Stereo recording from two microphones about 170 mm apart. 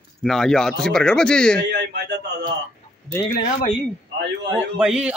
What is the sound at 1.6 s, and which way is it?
Speech, 75° right (ahead or behind).